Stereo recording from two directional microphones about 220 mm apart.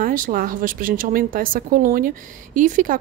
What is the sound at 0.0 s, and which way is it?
Speech, 40° right (ahead or behind).